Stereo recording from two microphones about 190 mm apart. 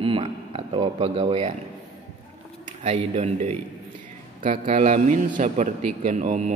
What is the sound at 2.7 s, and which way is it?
A man's voice, 35° right (ahead or behind).